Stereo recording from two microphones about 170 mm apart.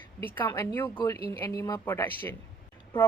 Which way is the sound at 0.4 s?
15° left (ahead or behind).